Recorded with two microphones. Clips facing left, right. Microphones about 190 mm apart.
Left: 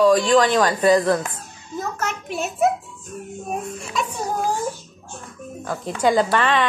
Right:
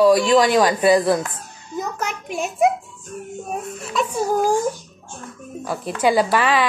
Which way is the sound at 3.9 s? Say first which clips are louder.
Right 6 dB; 10° right (ahead or behind).